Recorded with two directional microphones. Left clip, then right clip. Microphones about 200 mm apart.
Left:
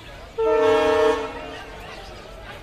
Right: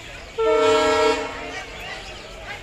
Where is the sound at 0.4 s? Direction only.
Centre (ahead or behind).